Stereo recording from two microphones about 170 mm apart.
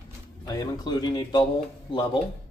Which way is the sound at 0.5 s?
25° left (ahead or behind).